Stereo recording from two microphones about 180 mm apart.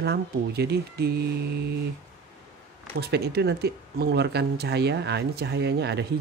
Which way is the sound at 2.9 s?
65° right (ahead or behind).